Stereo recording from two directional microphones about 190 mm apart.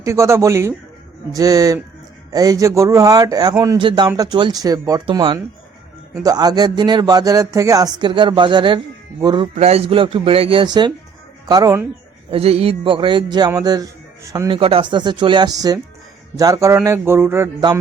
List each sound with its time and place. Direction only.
0.0 s speech: 15° right (ahead or behind)
12.3 s speech: 30° right (ahead or behind)
14.6 s speech: 30° right (ahead or behind); by 17.5 s 10° right (ahead or behind)